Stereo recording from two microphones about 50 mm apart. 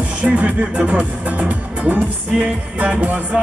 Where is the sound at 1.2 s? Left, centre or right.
Right.